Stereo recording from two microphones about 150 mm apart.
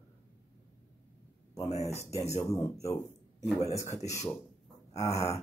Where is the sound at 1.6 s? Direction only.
45° left (ahead or behind).